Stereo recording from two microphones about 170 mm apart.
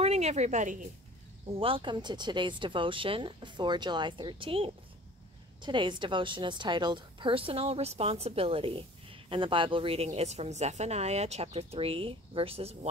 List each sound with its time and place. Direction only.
0.0 s a woman's voice: 40° right (ahead or behind)
1.5 s a woman's voice: 35° right (ahead or behind)